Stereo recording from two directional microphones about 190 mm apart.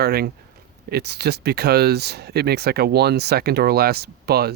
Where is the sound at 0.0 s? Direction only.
55° right (ahead or behind).